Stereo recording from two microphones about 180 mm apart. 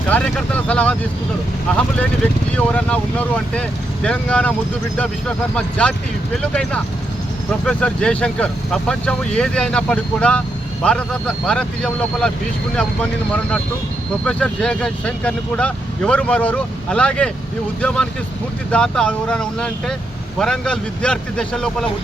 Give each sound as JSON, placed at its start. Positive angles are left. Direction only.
{"t": 0.1, "sound": "speech", "side_deg": 5}
{"t": 5.5, "sound": "speech", "side_deg": 5}